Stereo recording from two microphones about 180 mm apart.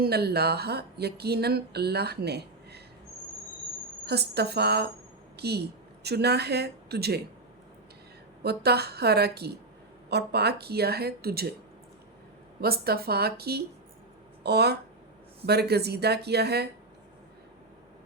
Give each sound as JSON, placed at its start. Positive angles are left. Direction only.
{"t": 0.0, "sound": "speech", "side_deg": -60}
{"t": 4.0, "sound": "a woman's voice", "side_deg": -65}
{"t": 8.4, "sound": "speech", "side_deg": -65}
{"t": 12.5, "sound": "speech", "side_deg": -60}